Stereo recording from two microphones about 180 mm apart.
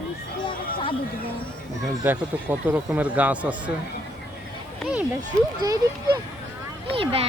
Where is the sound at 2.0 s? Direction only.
10° right (ahead or behind).